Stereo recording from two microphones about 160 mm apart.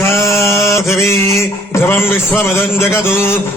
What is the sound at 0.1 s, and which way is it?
Mantra, 20° left (ahead or behind).